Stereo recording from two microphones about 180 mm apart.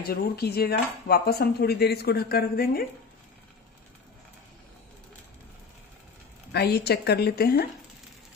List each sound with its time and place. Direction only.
0.0 s speech: 60° left (ahead or behind)
6.5 s speech: 65° left (ahead or behind)